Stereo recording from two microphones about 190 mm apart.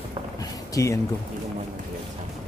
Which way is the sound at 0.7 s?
15° left (ahead or behind).